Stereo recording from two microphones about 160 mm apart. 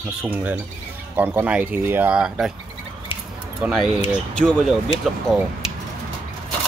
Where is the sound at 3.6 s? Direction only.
Centre (ahead or behind).